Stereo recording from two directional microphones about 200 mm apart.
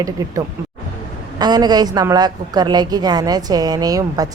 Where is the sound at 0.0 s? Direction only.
15° right (ahead or behind).